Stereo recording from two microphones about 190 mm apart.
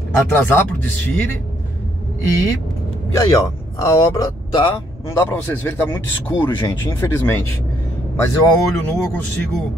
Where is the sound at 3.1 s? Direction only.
20° left (ahead or behind).